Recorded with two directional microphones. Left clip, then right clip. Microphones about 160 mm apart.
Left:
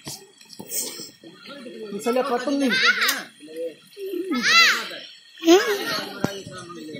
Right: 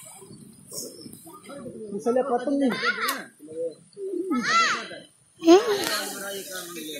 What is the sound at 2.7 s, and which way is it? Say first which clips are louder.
Speech: left 6 dB; 35° right (ahead or behind).